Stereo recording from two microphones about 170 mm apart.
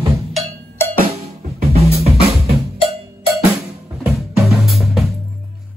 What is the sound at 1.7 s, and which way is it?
Drum, 35° right (ahead or behind).